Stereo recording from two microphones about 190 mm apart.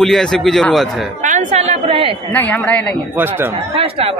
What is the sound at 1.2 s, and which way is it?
Speech, 40° right (ahead or behind).